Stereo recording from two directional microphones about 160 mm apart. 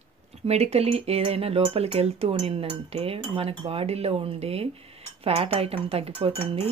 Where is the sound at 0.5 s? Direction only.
40° right (ahead or behind).